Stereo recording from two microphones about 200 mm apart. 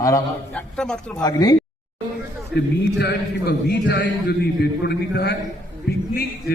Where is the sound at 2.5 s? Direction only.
55° left (ahead or behind).